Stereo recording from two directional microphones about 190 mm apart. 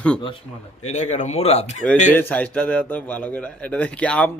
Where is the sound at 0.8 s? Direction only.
40° left (ahead or behind).